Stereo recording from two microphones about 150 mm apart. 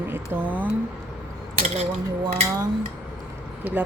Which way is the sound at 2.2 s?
25° right (ahead or behind).